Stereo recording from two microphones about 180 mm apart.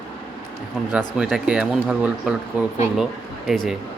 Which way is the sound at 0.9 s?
5° right (ahead or behind).